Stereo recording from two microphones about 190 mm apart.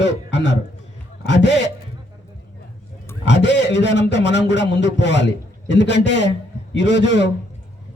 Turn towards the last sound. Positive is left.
turn(degrees=65)  # may be behind; listen again after turning